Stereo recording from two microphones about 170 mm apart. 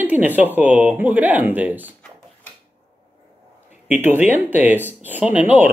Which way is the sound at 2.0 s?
10° left (ahead or behind).